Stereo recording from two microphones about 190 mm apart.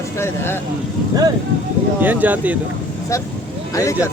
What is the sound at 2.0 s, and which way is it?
Speech, 10° right (ahead or behind).